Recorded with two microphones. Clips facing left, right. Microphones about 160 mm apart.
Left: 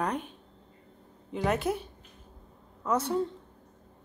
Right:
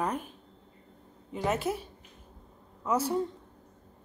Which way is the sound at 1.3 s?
5° right (ahead or behind).